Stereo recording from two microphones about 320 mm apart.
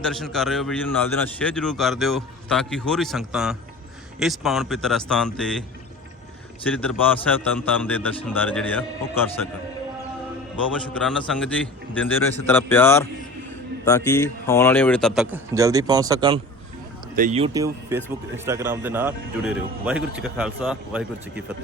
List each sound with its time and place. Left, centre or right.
0.0 s a man's voice: centre
6.7 s a man's voice: centre
10.7 s a man's voice: centre